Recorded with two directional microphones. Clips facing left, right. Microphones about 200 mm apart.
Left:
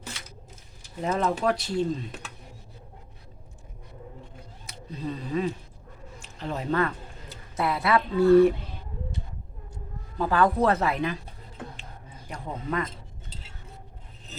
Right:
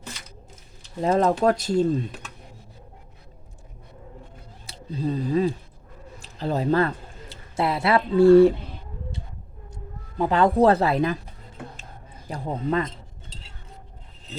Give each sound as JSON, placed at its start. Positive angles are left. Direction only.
{"t": 1.0, "sound": "speech", "side_deg": -35}
{"t": 4.6, "sound": "speech", "side_deg": -30}
{"t": 10.2, "sound": "speech", "side_deg": -20}
{"t": 12.3, "sound": "speech", "side_deg": -35}